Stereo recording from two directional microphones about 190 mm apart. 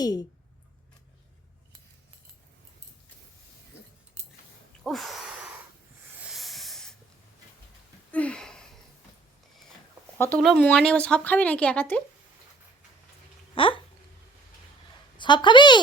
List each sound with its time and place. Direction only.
0.0 s a woman's voice: 20° left (ahead or behind)
4.8 s a sound: centre (ahead or behind)
6.3 s hiss: centre (ahead or behind)
8.1 s a sound: 5° left (ahead or behind)
10.2 s speech: 5° left (ahead or behind)
13.6 s a woman's voice: 25° left (ahead or behind)
15.2 s a woman's voice: 25° left (ahead or behind)